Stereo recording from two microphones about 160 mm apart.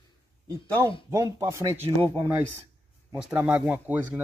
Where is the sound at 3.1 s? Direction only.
5° right (ahead or behind).